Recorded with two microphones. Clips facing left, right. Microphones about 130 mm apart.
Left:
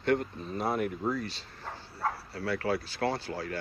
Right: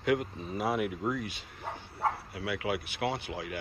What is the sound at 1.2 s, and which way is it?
Speech, 15° right (ahead or behind).